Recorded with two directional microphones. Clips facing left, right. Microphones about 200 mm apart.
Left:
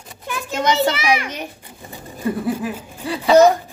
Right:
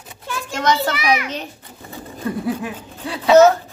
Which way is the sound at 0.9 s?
30° left (ahead or behind).